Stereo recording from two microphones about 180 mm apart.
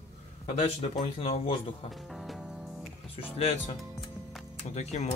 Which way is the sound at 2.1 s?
Centre (ahead or behind).